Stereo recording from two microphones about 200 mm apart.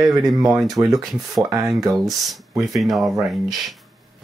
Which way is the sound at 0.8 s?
15° right (ahead or behind).